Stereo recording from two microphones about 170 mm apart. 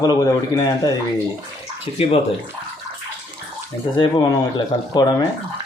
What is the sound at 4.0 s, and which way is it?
Speech, 25° left (ahead or behind).